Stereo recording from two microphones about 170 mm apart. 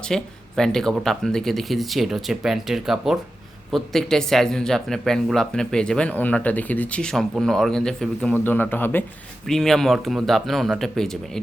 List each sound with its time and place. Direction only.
0.1 s speech: 5° left (ahead or behind)